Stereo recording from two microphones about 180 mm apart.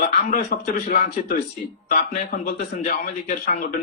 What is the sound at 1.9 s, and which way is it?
A man's voice, 55° left (ahead or behind).